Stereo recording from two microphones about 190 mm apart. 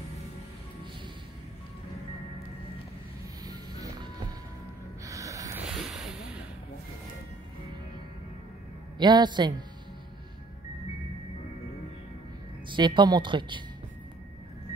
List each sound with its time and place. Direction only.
3.4 s vehicle: 20° right (ahead or behind)
5.0 s music: 15° right (ahead or behind)
5.7 s a sound: centre (ahead or behind)
8.9 s a man's voice: 25° right (ahead or behind)
12.7 s speech: 25° right (ahead or behind)